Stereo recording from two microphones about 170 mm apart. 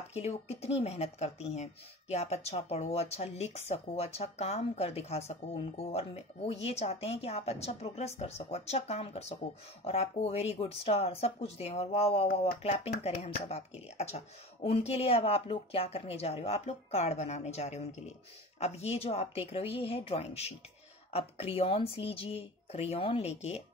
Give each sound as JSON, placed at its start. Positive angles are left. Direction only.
{"t": 0.1, "sound": "speech", "side_deg": 40}